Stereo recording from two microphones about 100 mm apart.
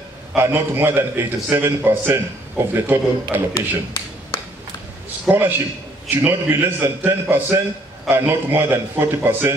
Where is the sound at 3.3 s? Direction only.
20° right (ahead or behind).